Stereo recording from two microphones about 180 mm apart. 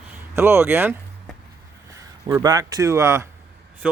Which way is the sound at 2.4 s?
20° right (ahead or behind).